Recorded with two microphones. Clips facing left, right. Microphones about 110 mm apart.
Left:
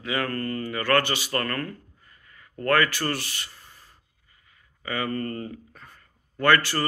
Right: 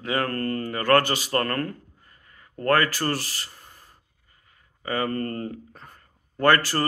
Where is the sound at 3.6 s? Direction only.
45° right (ahead or behind).